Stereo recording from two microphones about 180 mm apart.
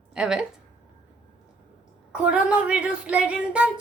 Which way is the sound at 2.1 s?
5° right (ahead or behind).